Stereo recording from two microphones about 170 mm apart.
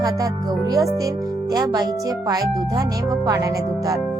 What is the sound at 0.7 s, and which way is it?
Speech, 20° right (ahead or behind).